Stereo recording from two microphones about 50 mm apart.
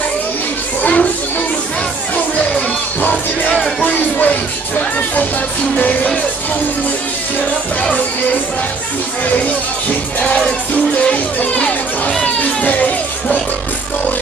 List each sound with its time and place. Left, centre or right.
0.8 s children playing: left
2.3 s music: left
10.7 s music: left